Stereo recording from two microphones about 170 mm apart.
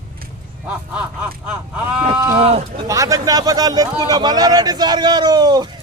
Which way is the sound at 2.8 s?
20° right (ahead or behind).